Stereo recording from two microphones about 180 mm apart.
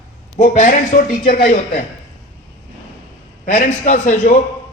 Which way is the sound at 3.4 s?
50° left (ahead or behind).